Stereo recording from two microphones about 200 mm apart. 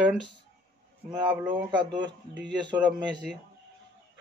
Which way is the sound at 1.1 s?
20° right (ahead or behind).